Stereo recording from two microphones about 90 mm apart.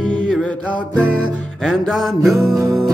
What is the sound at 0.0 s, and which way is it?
Music, 10° left (ahead or behind).